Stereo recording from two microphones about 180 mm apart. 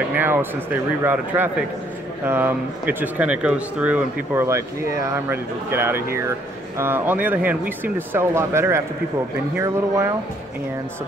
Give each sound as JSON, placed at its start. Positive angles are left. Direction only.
{"t": 0.1, "sound": "speech", "side_deg": -10}